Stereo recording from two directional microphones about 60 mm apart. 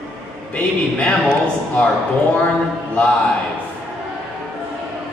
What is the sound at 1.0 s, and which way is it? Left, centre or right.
Speech, centre.